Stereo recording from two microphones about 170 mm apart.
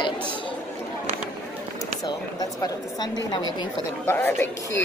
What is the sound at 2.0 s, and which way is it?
Speech, 25° left (ahead or behind).